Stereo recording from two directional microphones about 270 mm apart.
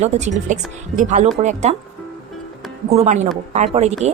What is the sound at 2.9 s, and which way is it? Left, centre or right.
A woman's voice, right.